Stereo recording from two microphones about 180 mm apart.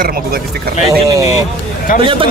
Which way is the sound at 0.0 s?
55° right (ahead or behind).